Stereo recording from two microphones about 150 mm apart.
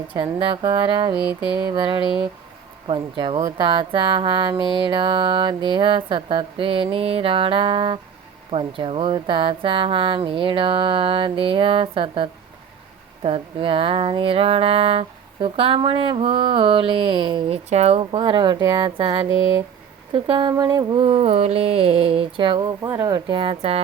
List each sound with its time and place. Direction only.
0.1 s speech: 35° right (ahead or behind)
20.5 s mantra: 25° right (ahead or behind)
21.0 s speech: 40° right (ahead or behind)